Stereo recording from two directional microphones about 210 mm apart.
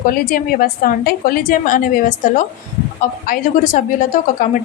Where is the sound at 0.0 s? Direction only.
45° left (ahead or behind).